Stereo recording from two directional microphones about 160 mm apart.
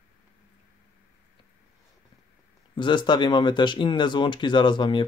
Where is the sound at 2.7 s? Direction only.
30° left (ahead or behind).